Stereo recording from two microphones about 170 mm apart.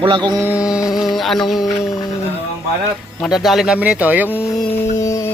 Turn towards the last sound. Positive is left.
turn(degrees=20)  # may be behind; listen again after turning